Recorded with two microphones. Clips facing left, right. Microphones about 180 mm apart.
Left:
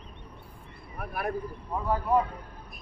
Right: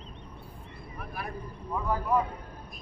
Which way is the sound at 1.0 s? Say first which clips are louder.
Left 7 dB; 60° left (ahead or behind).